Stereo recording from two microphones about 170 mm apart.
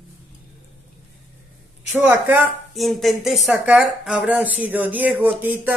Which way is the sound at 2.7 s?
Centre (ahead or behind).